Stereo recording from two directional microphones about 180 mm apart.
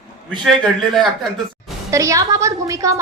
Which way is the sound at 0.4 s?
Centre (ahead or behind).